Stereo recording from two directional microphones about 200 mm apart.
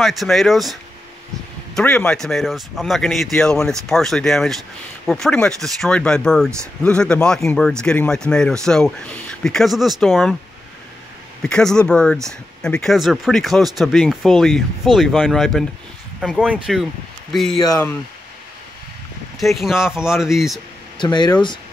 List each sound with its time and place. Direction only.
0.0 s speech: centre (ahead or behind)
1.8 s speech: 5° left (ahead or behind)
11.4 s speech: 5° left (ahead or behind)
17.6 s speech: 20° left (ahead or behind)
19.4 s speech: centre (ahead or behind)
21.0 s speech: 20° left (ahead or behind)